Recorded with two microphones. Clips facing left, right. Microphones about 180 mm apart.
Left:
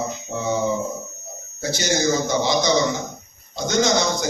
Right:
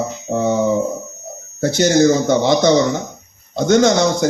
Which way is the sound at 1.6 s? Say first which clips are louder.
Right 9 dB; 60° right (ahead or behind).